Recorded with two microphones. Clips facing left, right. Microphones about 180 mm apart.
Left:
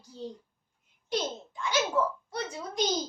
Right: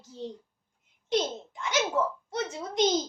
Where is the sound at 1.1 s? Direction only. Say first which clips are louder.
Right 4 dB; 20° right (ahead or behind).